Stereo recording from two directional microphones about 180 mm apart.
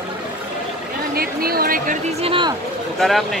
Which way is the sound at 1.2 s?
55° right (ahead or behind).